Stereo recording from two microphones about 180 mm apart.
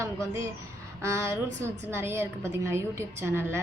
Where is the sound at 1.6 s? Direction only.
15° right (ahead or behind).